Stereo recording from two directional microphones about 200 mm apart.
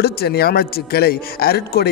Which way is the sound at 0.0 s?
55° left (ahead or behind).